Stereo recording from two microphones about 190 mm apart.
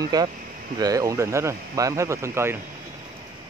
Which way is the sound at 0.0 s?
20° right (ahead or behind).